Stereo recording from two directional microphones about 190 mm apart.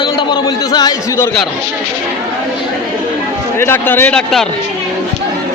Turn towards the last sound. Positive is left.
turn(degrees=5)  # may be behind; listen again after turning